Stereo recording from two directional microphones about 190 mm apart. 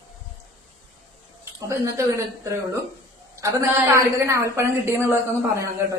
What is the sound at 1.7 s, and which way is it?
Speech, 15° right (ahead or behind).